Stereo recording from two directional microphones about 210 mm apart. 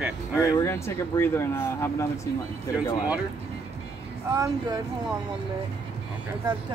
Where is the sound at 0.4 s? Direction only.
10° left (ahead or behind).